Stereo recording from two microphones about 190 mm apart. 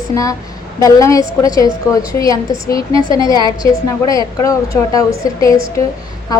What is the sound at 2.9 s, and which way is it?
Speech, 25° right (ahead or behind).